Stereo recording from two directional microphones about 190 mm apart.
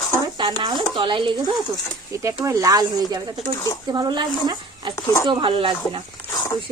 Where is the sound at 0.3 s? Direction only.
25° right (ahead or behind).